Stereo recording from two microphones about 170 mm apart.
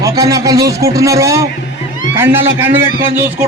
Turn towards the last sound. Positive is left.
turn(degrees=-15)  # may be behind; listen again after turning